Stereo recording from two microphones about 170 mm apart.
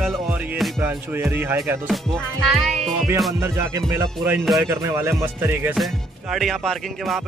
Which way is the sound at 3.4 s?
15° right (ahead or behind).